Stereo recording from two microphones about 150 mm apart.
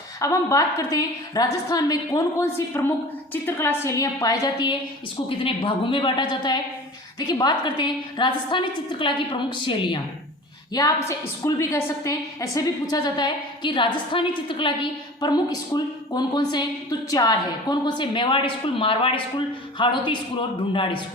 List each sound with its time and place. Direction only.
0.2 s a woman's voice: 20° left (ahead or behind)